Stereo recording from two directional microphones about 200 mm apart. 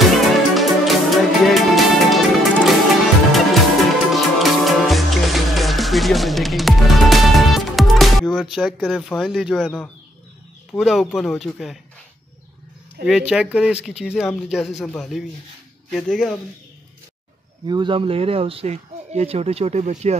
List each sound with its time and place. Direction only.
0.3 s music: centre (ahead or behind)
10.7 s speech: centre (ahead or behind)
13.0 s speech: 5° right (ahead or behind)
17.6 s speech: 25° right (ahead or behind)